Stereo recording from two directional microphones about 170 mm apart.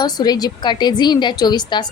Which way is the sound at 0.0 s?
25° left (ahead or behind).